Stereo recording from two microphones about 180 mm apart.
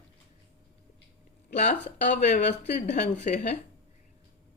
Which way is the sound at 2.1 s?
45° left (ahead or behind).